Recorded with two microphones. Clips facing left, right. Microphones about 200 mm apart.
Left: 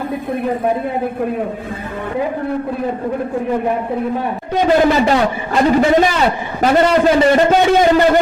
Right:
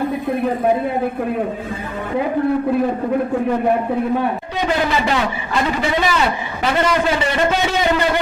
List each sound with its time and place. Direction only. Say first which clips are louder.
4.5 s a man's voice: left 9 dB; 45° left (ahead or behind)